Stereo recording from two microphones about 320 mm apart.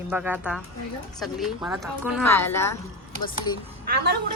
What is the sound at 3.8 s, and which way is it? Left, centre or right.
Speech, right.